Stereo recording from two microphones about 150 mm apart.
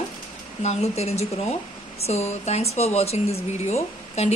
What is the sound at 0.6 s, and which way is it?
Speech, 45° left (ahead or behind).